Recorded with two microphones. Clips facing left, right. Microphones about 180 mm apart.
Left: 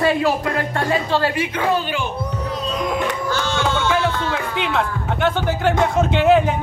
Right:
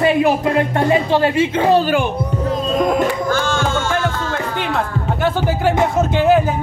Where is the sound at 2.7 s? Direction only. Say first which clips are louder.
Right 6 dB; 45° right (ahead or behind).